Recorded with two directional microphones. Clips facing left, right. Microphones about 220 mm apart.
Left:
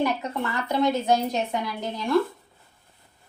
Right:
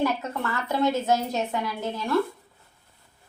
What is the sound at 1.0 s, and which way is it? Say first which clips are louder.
Speech: left 2 dB; 15° left (ahead or behind).